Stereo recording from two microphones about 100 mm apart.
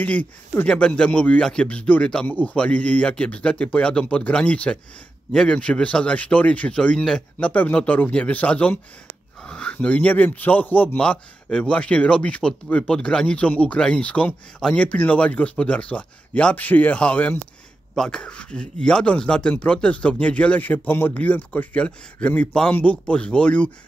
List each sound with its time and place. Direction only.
0.0 s a man's voice: 15° left (ahead or behind)